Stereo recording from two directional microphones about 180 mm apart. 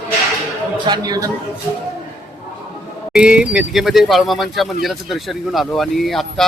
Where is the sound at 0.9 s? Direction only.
20° right (ahead or behind).